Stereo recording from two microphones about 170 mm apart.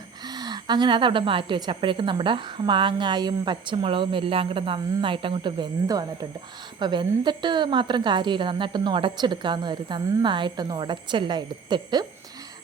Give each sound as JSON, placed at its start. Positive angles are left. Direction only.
{"t": 0.3, "sound": "a woman's voice", "side_deg": -25}